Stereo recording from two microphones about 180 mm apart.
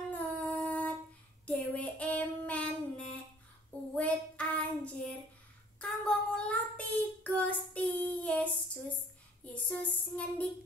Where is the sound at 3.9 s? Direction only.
5° left (ahead or behind).